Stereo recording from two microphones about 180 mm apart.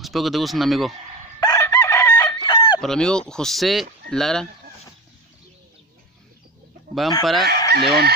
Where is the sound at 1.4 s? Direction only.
20° left (ahead or behind).